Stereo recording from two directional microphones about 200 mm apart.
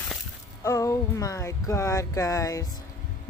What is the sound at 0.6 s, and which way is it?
A woman's voice, 15° left (ahead or behind).